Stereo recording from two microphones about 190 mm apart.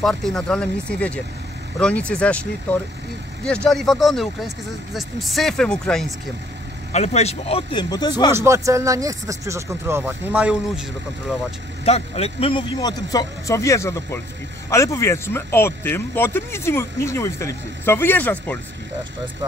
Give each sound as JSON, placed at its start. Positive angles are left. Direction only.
{"t": 0.0, "sound": "speech", "side_deg": 0}
{"t": 6.9, "sound": "speech", "side_deg": 35}
{"t": 8.3, "sound": "speech", "side_deg": -15}
{"t": 11.8, "sound": "speech", "side_deg": 30}